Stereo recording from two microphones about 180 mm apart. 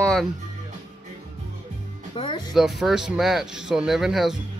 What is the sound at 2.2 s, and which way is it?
Speech, 25° left (ahead or behind).